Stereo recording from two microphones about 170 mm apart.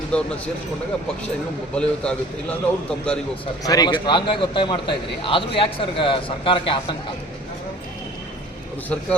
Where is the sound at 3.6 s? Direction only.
25° left (ahead or behind).